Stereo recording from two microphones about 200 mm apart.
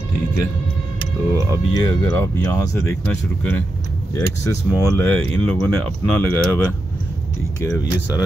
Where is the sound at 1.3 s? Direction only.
15° right (ahead or behind).